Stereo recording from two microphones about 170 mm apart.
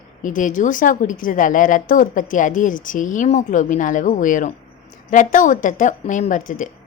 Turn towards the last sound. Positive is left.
turn(degrees=50)  # may be behind; listen again after turning